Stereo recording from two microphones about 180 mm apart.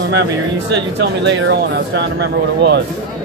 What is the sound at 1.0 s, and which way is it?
Speech, 70° right (ahead or behind).